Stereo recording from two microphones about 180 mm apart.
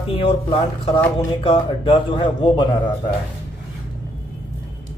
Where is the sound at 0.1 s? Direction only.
30° left (ahead or behind).